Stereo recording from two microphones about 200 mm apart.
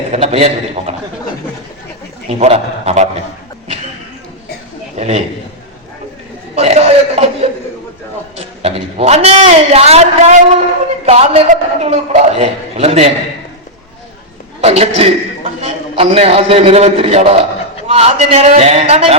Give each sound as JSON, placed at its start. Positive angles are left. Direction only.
{"t": 0.1, "sound": "a man's voice", "side_deg": -30}
{"t": 2.4, "sound": "a man's voice", "side_deg": -30}
{"t": 4.9, "sound": "a man's voice", "side_deg": -30}
{"t": 6.6, "sound": "a man's voice", "side_deg": -30}
{"t": 8.4, "sound": "a man's voice", "side_deg": -30}
{"t": 14.6, "sound": "a woman's voice", "side_deg": -30}